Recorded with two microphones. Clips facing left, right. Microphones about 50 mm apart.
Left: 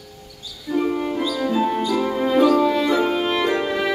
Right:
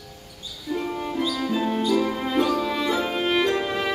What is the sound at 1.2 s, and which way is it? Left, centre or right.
Music, centre.